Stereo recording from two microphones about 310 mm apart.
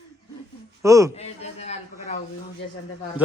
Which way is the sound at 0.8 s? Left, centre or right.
Centre.